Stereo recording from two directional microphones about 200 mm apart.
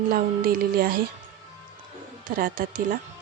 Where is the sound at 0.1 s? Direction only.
45° right (ahead or behind).